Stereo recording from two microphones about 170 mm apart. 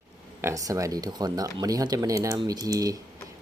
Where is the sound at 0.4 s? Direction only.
20° right (ahead or behind).